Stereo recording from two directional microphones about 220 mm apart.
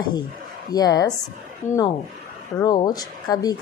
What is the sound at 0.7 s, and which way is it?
Speech, 15° left (ahead or behind).